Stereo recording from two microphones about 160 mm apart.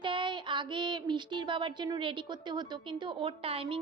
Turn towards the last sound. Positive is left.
turn(degrees=-35)  # may be behind; listen again after turning